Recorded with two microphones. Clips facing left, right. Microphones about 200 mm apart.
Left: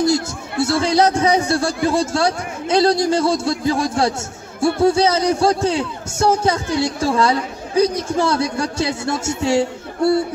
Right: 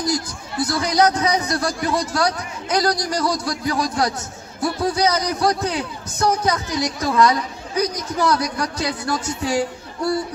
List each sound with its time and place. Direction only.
0.0 s a man's voice: 25° left (ahead or behind)